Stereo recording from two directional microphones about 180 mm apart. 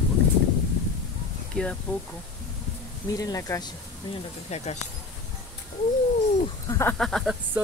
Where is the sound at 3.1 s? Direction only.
20° left (ahead or behind).